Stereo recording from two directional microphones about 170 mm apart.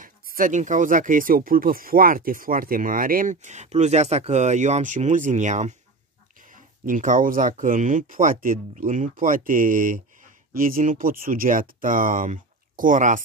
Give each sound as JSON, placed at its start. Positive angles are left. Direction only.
{"t": 0.0, "sound": "speech", "side_deg": -55}